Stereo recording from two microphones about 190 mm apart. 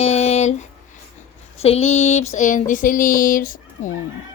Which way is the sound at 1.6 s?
35° left (ahead or behind).